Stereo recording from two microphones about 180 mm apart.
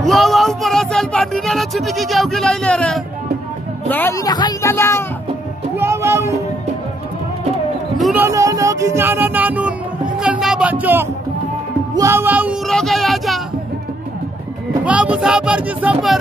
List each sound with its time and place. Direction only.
0.0 s speech: centre (ahead or behind)
4.3 s speech: 20° left (ahead or behind)
5.8 s speech: 15° right (ahead or behind)
8.0 s music: 10° right (ahead or behind)
10.2 s speech: 5° right (ahead or behind)
11.9 s music: 15° right (ahead or behind)
12.6 s music: centre (ahead or behind)
14.9 s speech: 5° right (ahead or behind)